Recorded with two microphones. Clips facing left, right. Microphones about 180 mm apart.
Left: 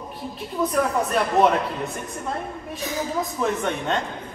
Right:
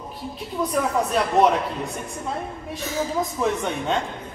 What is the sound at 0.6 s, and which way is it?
A woman's voice, centre (ahead or behind).